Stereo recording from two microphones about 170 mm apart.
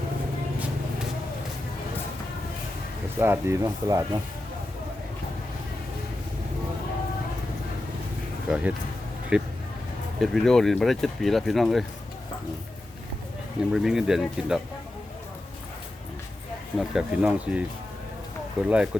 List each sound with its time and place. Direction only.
3.2 s speech: 15° right (ahead or behind)
8.4 s speech: 5° right (ahead or behind)
13.7 s speech: 5° right (ahead or behind)
16.7 s speech: 5° right (ahead or behind)